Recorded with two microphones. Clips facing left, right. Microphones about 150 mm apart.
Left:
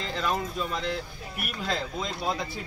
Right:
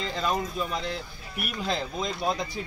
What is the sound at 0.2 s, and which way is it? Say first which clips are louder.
Speech: right 1 dB; 15° right (ahead or behind).